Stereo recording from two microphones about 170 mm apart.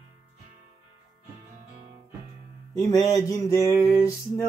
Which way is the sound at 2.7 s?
20° left (ahead or behind).